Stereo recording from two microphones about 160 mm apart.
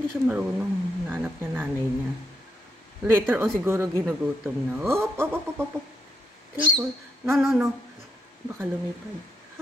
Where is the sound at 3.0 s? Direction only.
15° right (ahead or behind).